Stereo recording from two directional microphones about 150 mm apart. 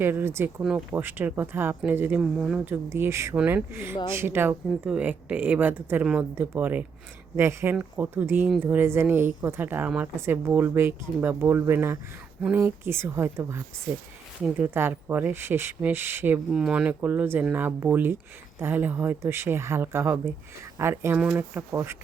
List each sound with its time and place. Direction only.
0.0 s speech: 15° right (ahead or behind)